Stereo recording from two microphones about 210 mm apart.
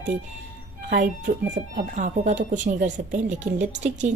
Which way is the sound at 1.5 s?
35° right (ahead or behind).